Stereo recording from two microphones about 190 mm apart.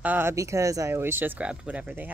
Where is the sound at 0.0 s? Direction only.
10° right (ahead or behind).